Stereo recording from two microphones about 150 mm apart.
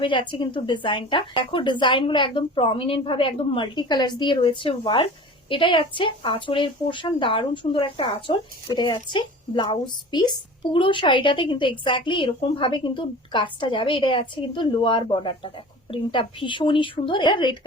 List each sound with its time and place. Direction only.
0.0 s a woman's voice: 35° left (ahead or behind)